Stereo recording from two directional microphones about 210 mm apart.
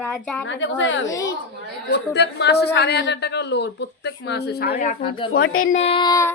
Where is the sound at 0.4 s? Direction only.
60° left (ahead or behind); by 5.0 s 35° left (ahead or behind).